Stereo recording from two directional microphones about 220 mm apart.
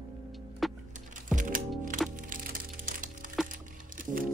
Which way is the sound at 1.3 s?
35° right (ahead or behind).